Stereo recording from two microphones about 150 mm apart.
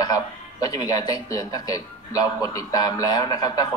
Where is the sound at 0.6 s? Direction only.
25° left (ahead or behind).